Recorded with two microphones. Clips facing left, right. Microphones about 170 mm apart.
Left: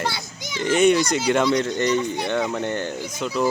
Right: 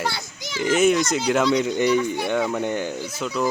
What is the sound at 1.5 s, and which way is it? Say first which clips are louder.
A man's voice: right 1 dB; 10° right (ahead or behind).